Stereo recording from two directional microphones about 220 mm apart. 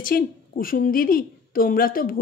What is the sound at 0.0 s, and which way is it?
Speech, 40° left (ahead or behind).